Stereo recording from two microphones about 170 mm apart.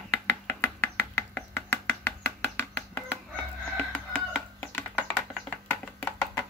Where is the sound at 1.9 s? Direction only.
10° left (ahead or behind).